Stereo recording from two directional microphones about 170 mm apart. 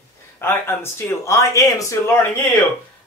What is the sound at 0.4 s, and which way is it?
Speech, 15° left (ahead or behind).